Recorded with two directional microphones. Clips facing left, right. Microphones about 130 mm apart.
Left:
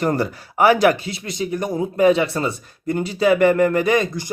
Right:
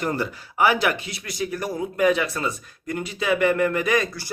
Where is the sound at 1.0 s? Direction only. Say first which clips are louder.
Left 4 dB; 25° left (ahead or behind).